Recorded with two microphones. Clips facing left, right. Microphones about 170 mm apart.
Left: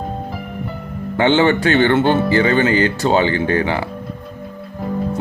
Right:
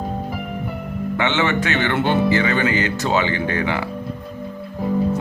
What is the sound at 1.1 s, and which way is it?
Speech, 30° left (ahead or behind).